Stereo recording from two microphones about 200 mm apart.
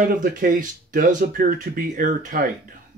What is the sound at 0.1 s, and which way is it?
Speech, 45° right (ahead or behind).